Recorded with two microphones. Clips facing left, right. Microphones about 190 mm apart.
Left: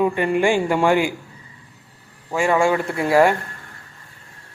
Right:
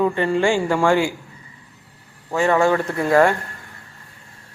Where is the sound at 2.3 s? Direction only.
10° left (ahead or behind).